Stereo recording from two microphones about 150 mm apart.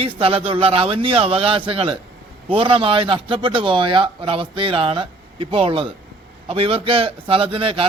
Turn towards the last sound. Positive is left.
turn(degrees=-35)  # may be behind; listen again after turning